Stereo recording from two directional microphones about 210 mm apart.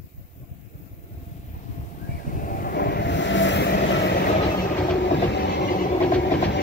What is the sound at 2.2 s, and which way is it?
Vehicle, 40° left (ahead or behind).